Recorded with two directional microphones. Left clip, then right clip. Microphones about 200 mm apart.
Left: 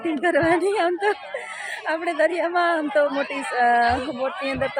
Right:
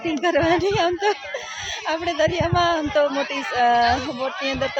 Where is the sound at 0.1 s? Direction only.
15° right (ahead or behind).